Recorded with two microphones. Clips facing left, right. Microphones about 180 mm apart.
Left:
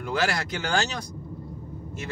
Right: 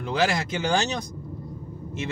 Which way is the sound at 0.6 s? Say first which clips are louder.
Right 3 dB; 20° right (ahead or behind).